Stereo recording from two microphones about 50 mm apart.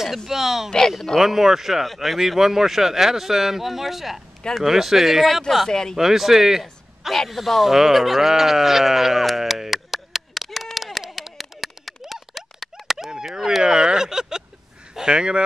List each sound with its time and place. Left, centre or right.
0.3 s speech: centre
0.7 s speech: centre
1.2 s speech: centre
5.7 s speech: centre
5.9 s speech: centre
11.0 s a sound: centre
15.0 s speech: centre